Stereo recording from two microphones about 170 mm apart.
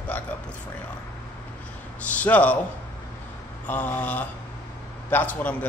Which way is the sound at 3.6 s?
10° left (ahead or behind).